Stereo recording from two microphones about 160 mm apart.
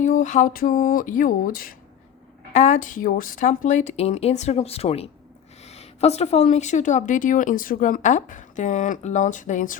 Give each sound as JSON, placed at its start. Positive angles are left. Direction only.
{"t": 0.0, "sound": "speech", "side_deg": 50}
{"t": 2.5, "sound": "speech", "side_deg": 45}